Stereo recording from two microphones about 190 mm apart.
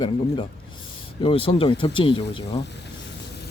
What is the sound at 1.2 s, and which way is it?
Speech, 30° left (ahead or behind).